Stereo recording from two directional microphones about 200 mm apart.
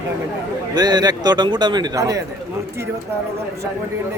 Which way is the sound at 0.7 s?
20° right (ahead or behind).